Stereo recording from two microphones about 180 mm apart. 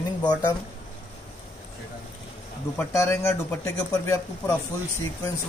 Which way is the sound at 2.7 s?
15° left (ahead or behind).